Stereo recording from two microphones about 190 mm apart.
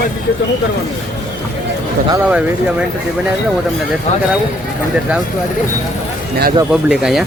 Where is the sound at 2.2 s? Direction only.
5° right (ahead or behind).